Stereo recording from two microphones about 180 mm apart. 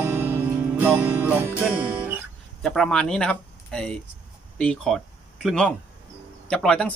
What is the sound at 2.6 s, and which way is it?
Speech, 5° left (ahead or behind).